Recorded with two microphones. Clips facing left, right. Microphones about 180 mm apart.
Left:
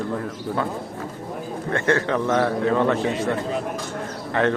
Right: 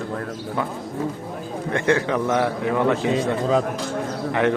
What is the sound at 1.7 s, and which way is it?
A man's voice, 15° right (ahead or behind).